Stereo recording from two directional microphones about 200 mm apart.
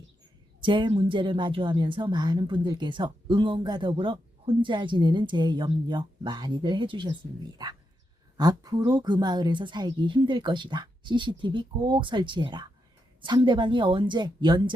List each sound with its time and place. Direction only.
0.6 s speech: 25° right (ahead or behind)